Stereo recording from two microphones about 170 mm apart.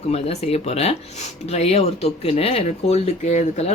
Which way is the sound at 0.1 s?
40° left (ahead or behind).